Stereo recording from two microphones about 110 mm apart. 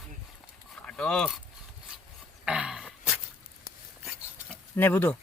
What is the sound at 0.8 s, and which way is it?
Speech, 10° left (ahead or behind).